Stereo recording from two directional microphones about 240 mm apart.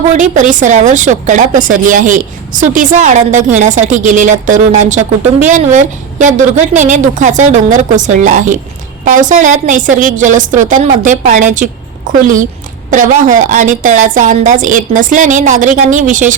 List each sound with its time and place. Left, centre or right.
0.1 s a woman's voice: right